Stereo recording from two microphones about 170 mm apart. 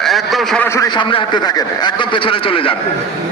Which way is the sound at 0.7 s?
25° left (ahead or behind).